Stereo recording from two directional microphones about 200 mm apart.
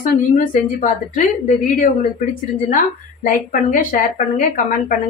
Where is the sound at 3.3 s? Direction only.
40° left (ahead or behind).